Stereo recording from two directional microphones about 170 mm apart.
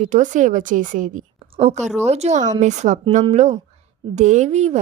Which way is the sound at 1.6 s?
40° right (ahead or behind).